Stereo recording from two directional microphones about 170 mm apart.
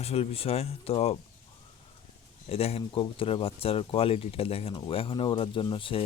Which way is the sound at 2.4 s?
35° left (ahead or behind).